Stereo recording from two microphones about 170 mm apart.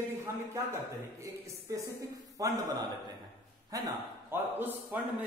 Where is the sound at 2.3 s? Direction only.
20° right (ahead or behind).